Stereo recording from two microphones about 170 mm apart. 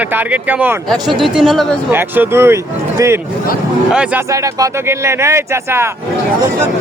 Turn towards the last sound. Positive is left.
turn(degrees=-15)  # may be behind; listen again after turning